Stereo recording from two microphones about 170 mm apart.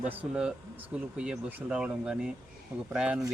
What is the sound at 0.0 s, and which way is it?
Speech, 5° right (ahead or behind).